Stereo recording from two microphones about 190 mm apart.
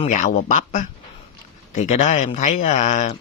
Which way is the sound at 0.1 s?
40° left (ahead or behind).